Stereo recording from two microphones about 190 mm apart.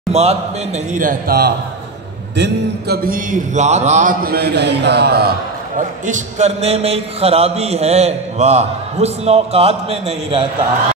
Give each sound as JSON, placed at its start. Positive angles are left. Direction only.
{"t": 0.1, "sound": "a man's voice", "side_deg": -35}
{"t": 0.9, "sound": "a man's voice", "side_deg": -45}
{"t": 5.8, "sound": "a man's voice", "side_deg": -40}